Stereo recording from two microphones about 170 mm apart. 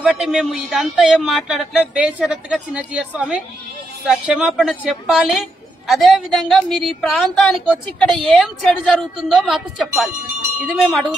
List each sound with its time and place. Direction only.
0.0 s speech: 5° right (ahead or behind)